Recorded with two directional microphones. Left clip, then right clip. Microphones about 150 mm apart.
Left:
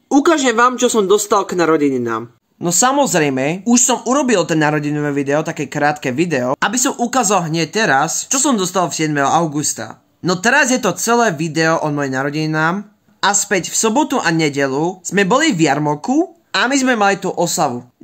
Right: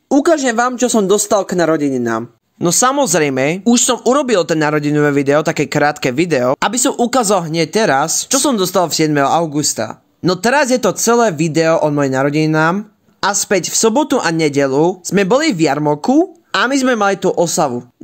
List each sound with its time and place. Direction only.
0.3 s speech: 45° right (ahead or behind)
6.7 s speech: 30° right (ahead or behind)